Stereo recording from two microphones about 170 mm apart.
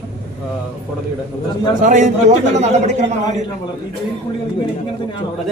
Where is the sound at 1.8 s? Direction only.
50° right (ahead or behind).